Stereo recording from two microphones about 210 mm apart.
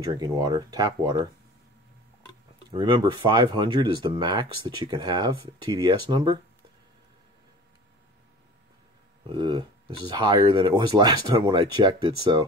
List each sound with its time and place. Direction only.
0.0 s speech: 20° right (ahead or behind)
2.7 s speech: 20° right (ahead or behind)
9.3 s speech: 20° right (ahead or behind)